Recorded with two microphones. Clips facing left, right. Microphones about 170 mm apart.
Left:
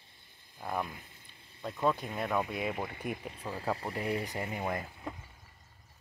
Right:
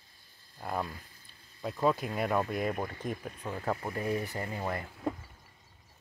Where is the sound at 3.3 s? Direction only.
30° left (ahead or behind).